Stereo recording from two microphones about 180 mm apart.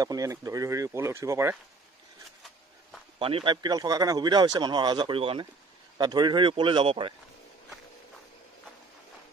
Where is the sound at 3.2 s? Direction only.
30° right (ahead or behind).